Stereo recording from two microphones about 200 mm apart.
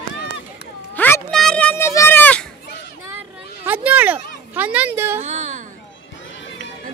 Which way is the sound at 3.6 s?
10° right (ahead or behind).